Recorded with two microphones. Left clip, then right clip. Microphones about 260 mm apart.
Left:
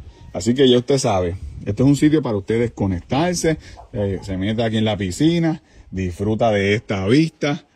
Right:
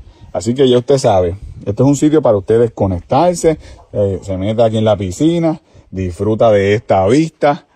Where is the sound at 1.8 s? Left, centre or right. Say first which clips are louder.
Right 5 dB; right.